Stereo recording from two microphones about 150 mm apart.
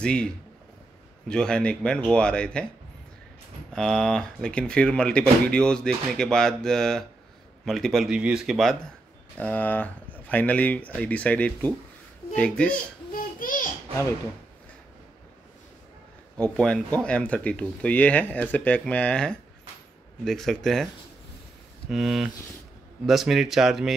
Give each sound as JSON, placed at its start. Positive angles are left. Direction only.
{"t": 0.0, "sound": "speech", "side_deg": 5}
{"t": 3.7, "sound": "speech", "side_deg": 5}
{"t": 13.1, "sound": "a sound", "side_deg": 70}
{"t": 16.3, "sound": "speech", "side_deg": 5}